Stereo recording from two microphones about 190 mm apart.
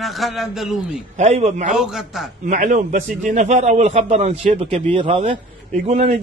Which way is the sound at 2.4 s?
40° right (ahead or behind).